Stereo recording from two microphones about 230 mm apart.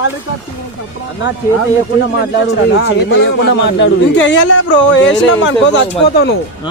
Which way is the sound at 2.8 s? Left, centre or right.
Left.